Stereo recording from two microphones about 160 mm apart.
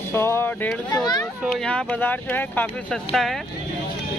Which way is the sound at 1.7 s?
10° left (ahead or behind).